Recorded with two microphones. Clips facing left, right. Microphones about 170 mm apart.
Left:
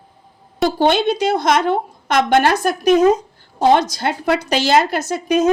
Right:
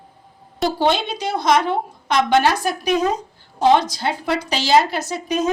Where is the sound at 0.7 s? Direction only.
55° left (ahead or behind).